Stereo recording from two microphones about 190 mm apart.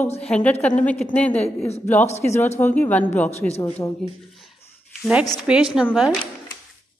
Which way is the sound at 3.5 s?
35° left (ahead or behind).